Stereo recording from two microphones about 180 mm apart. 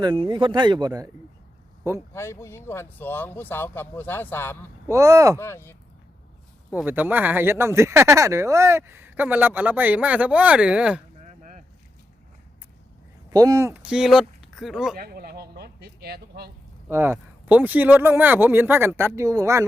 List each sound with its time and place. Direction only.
0.0 s speech: 25° right (ahead or behind)
2.1 s speech: 15° left (ahead or behind)
4.9 s speech: 15° right (ahead or behind)
5.4 s speech: 15° left (ahead or behind)
6.7 s speech: 10° right (ahead or behind)
11.2 s a sound: 45° right (ahead or behind)
13.3 s speech: 20° right (ahead or behind); by 14.9 s centre (ahead or behind)
14.9 s speech: 55° right (ahead or behind)
16.9 s speech: 10° right (ahead or behind)